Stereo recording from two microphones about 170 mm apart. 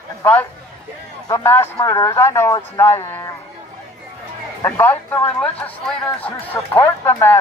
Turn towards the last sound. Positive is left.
turn(degrees=10)  # may be behind; listen again after turning